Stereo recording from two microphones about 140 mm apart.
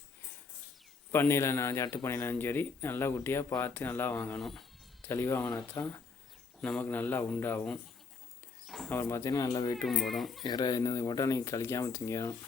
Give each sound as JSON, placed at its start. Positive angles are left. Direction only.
{"t": 1.1, "sound": "speech", "side_deg": 15}
{"t": 8.6, "sound": "bird", "side_deg": 0}
{"t": 8.9, "sound": "speech", "side_deg": 15}
{"t": 9.8, "sound": "speech", "side_deg": 0}
{"t": 10.4, "sound": "speech", "side_deg": 30}